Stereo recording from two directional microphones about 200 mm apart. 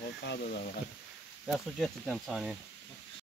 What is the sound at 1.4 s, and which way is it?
Speech, centre (ahead or behind).